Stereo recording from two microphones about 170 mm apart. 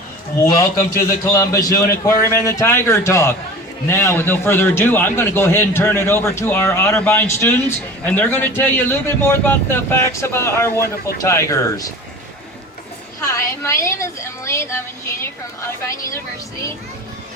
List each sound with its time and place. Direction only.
0.3 s a man's voice: 20° left (ahead or behind)
13.2 s a man's voice: 15° left (ahead or behind)